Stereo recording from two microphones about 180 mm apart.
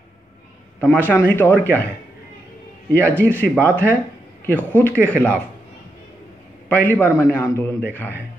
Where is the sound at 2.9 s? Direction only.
15° right (ahead or behind).